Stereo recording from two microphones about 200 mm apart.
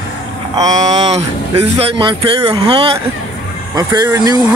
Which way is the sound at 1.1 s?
30° right (ahead or behind).